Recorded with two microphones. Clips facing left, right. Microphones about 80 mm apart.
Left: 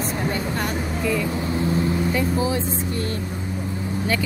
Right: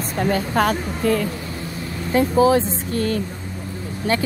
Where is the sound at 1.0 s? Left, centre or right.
Right.